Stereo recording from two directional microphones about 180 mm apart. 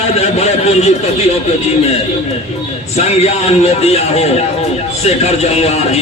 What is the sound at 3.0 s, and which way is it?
Speech, 35° left (ahead or behind).